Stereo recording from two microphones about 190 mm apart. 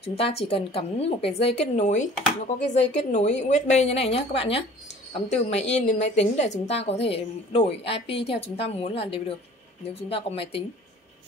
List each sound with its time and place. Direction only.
0.0 s a woman's voice: 35° left (ahead or behind)